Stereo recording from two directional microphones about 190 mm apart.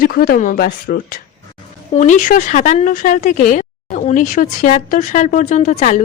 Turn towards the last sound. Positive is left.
turn(degrees=40)  # may be behind; listen again after turning